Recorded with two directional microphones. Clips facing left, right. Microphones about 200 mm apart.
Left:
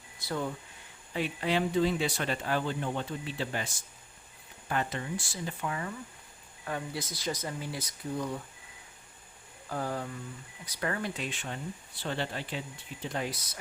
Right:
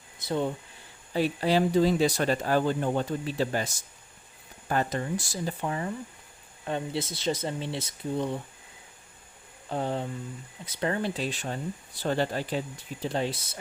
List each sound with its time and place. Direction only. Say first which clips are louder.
0.2 s speech: right 5 dB; 20° right (ahead or behind)
1.1 s speech: right 6 dB; 35° right (ahead or behind)
4.7 s speech: right 5 dB; 40° right (ahead or behind)
9.6 s speech: right 4 dB; 25° right (ahead or behind)